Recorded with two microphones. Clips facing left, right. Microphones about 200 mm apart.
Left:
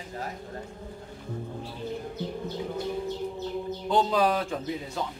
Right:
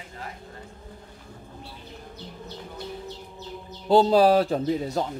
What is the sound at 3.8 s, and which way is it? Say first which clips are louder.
Speech: right 7 dB; 35° right (ahead or behind).